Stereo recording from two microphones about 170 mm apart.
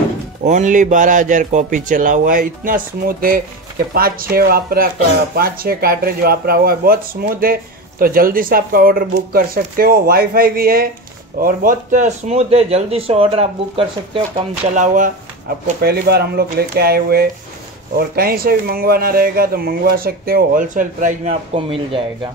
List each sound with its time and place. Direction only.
0.4 s speech: 45° right (ahead or behind)
14.7 s speech: 45° right (ahead or behind)
15.8 s speech: 65° right (ahead or behind); by 21.4 s 50° right (ahead or behind)
21.5 s speech: 30° right (ahead or behind)